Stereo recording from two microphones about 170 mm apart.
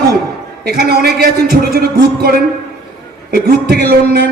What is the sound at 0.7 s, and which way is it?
A man's voice, 65° right (ahead or behind).